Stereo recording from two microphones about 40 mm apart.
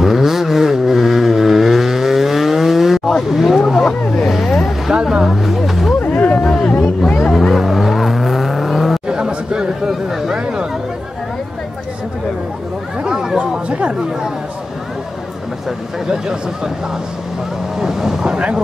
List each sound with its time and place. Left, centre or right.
0.0 s vehicle: centre
3.3 s a sound: centre
3.8 s boat: centre
5.1 s vehicle: centre
5.9 s a sound: left
6.4 s a sound: left
7.1 s music: centre
7.3 s vehicle: centre
9.0 s chatter: right
13.0 s a sound: centre
13.4 s chatter: right
16.1 s speech: centre
17.7 s speech: centre
18.3 s speech: right